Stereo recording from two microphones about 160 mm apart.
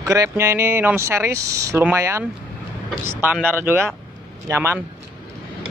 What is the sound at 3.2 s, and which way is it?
Speech, 10° right (ahead or behind).